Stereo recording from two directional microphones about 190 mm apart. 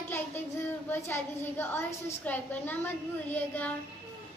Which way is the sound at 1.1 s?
10° left (ahead or behind).